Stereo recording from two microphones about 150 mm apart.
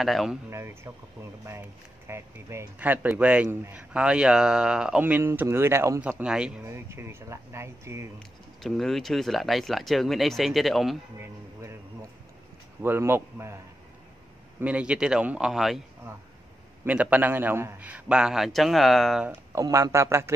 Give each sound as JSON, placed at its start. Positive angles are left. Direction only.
{"t": 0.0, "sound": "speech", "side_deg": 0}
{"t": 0.5, "sound": "speech", "side_deg": -20}
{"t": 2.0, "sound": "speech", "side_deg": -20}
{"t": 6.6, "sound": "speech", "side_deg": -15}
{"t": 8.2, "sound": "speech", "side_deg": 0}
{"t": 12.8, "sound": "speech", "side_deg": -15}
{"t": 14.6, "sound": "speech", "side_deg": -10}
{"t": 16.8, "sound": "speech", "side_deg": -10}
{"t": 19.2, "sound": "speech", "side_deg": -20}